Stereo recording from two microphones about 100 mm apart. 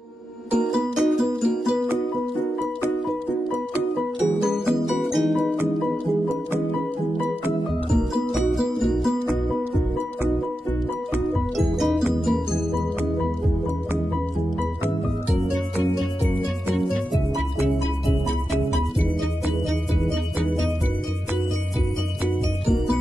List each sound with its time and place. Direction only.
0.6 s music: 10° right (ahead or behind)
3.9 s music: centre (ahead or behind)
7.9 s music: centre (ahead or behind)
11.5 s music: centre (ahead or behind)
18.5 s music: centre (ahead or behind)